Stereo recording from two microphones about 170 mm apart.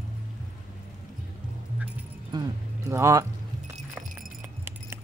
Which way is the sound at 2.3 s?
20° right (ahead or behind).